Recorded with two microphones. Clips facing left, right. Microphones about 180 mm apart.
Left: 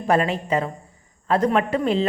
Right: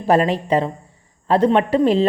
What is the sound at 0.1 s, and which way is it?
A woman's voice, 35° right (ahead or behind).